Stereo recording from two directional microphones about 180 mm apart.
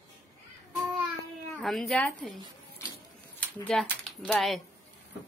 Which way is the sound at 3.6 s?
5° left (ahead or behind).